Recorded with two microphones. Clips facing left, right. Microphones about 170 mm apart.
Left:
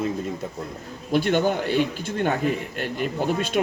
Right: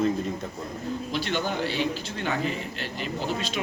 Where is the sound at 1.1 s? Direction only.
50° left (ahead or behind).